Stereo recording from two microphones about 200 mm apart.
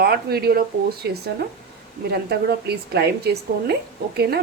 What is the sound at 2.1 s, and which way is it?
A woman's voice, 55° right (ahead or behind).